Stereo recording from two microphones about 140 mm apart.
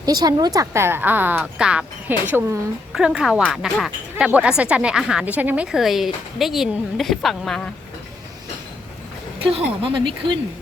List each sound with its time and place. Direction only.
0.0 s a woman's voice: 30° right (ahead or behind); by 2.6 s 15° right (ahead or behind)
2.9 s a woman's voice: 5° right (ahead or behind)
9.4 s speech: 40° right (ahead or behind)